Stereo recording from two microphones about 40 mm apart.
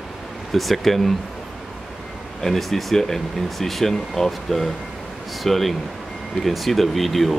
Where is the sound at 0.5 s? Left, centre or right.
Centre.